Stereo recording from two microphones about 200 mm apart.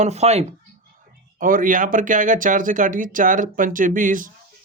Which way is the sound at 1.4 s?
45° right (ahead or behind).